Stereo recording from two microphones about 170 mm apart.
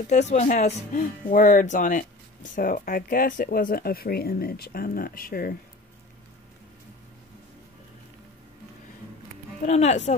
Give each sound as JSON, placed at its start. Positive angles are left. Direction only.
{"t": 0.0, "sound": "speech", "side_deg": 45}
{"t": 9.6, "sound": "speech", "side_deg": 40}